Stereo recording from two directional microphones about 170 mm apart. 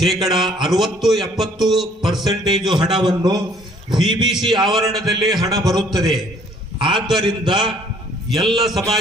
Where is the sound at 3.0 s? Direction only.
25° right (ahead or behind).